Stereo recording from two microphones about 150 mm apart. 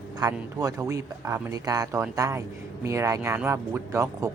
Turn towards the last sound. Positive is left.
turn(degrees=-20)  # may be behind; listen again after turning